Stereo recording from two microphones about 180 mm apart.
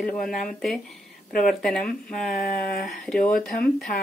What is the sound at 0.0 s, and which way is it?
Speech, centre (ahead or behind).